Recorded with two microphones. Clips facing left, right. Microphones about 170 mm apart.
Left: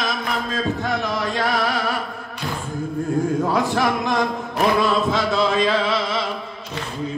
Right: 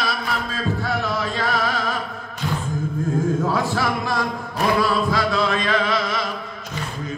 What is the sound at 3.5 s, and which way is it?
Speech, 15° left (ahead or behind).